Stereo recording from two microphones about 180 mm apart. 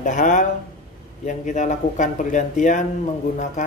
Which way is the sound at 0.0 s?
45° left (ahead or behind).